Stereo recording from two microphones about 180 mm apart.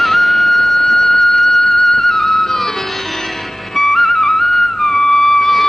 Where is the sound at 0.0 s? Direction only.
Centre (ahead or behind).